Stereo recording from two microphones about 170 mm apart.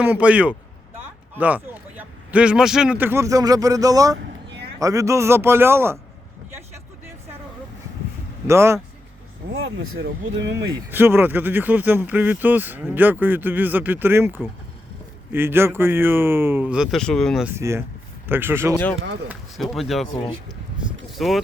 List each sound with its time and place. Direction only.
0.0 s speech: 10° right (ahead or behind)
8.4 s speech: 15° right (ahead or behind)
9.6 s speech: 90° right
10.9 s speech: 10° right (ahead or behind); by 17.4 s 5° left (ahead or behind)
17.4 s speech: 15° right (ahead or behind)
19.3 s speech: centre (ahead or behind)
21.1 s speech: centre (ahead or behind)